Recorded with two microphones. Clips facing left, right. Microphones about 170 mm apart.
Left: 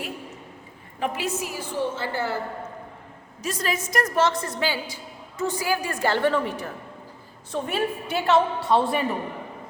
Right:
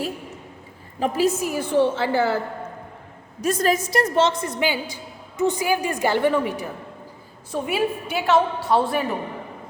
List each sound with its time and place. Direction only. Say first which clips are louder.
0.9 s a woman's voice: right 7 dB; 35° right (ahead or behind); by 2.4 s 90° right
3.4 s a woman's voice: right 7 dB; 50° right (ahead or behind); by 9.0 s centre (ahead or behind)